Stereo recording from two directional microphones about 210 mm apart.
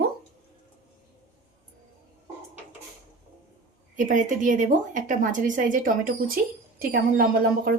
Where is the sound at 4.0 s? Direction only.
40° right (ahead or behind).